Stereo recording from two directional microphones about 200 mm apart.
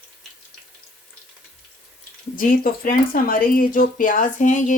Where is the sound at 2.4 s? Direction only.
45° left (ahead or behind).